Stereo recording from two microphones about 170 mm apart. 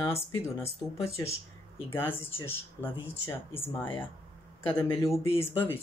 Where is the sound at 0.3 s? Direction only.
20° left (ahead or behind).